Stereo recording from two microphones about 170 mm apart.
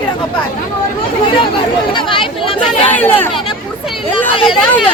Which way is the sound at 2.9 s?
10° left (ahead or behind).